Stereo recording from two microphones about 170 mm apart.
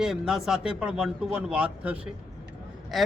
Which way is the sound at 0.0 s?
Centre (ahead or behind).